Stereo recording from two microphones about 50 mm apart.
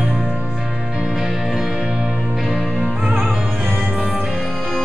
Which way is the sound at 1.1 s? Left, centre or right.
Centre.